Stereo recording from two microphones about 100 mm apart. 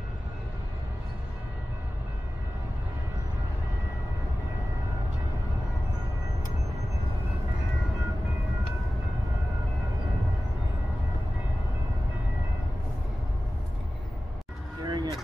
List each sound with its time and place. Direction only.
14.8 s vehicle: 40° right (ahead or behind)